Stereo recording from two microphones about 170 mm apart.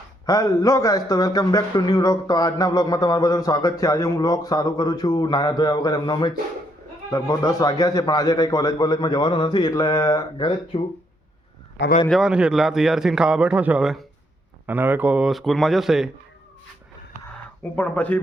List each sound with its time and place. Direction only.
0.3 s a man's voice: 20° left (ahead or behind)
12.0 s a man's voice: centre (ahead or behind)
17.6 s speech: 10° left (ahead or behind)